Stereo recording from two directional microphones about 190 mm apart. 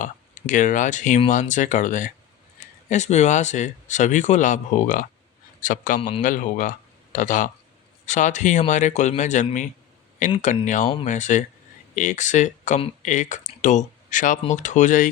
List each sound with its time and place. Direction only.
0.0 s speech: 40° left (ahead or behind)
6.0 s a man's voice: 30° left (ahead or behind)
6.2 s speech: 40° left (ahead or behind)